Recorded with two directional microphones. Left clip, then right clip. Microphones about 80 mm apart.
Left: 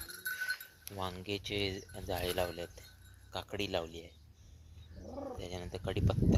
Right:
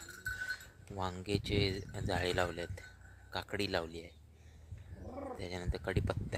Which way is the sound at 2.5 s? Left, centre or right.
Right.